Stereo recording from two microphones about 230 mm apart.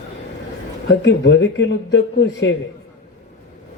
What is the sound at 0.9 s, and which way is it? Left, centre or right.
Speech, left.